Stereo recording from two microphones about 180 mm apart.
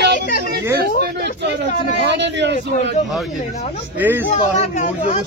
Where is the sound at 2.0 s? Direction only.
75° right (ahead or behind).